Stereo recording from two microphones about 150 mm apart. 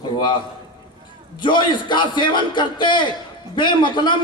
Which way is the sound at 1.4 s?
30° left (ahead or behind).